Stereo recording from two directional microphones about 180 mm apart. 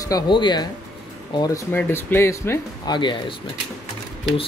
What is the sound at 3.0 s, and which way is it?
Speech, 25° left (ahead or behind).